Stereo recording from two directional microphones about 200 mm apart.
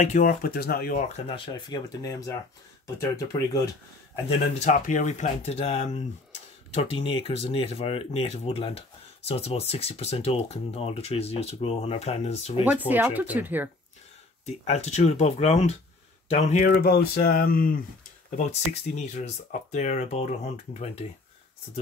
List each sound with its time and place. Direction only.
0.0 s speech: 40° left (ahead or behind); by 3.6 s 15° left (ahead or behind)
4.6 s speech: 40° left (ahead or behind)
12.6 s speech: 10° right (ahead or behind)
14.4 s speech: 30° left (ahead or behind)
16.8 s speech: 50° left (ahead or behind)
18.3 s speech: 35° left (ahead or behind)